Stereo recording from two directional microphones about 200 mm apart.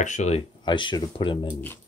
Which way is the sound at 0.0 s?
35° left (ahead or behind).